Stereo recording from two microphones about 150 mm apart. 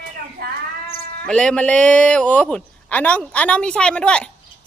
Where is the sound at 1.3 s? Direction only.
5° left (ahead or behind).